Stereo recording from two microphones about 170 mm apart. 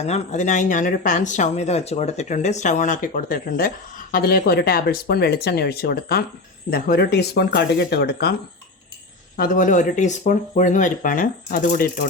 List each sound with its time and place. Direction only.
0.0 s speech: 40° left (ahead or behind); by 8.4 s 70° left (ahead or behind)
9.4 s speech: 55° left (ahead or behind)